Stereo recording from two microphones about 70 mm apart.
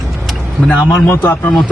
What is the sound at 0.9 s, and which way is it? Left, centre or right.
Speech, left.